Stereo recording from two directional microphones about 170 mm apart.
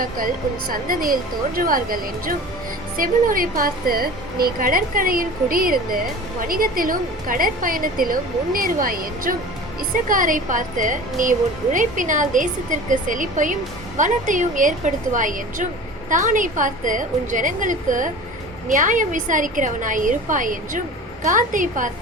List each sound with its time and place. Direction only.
0.7 s a woman's voice: 55° right (ahead or behind)